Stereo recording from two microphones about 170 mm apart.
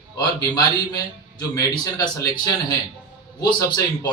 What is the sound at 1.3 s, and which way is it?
A man's voice, 25° left (ahead or behind).